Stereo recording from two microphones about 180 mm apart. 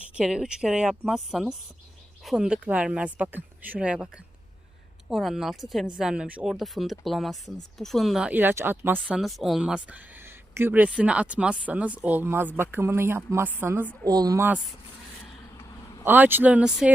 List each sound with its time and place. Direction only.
0.2 s speech: 5° right (ahead or behind)
14.1 s speech: 20° right (ahead or behind)
16.0 s speech: 10° right (ahead or behind)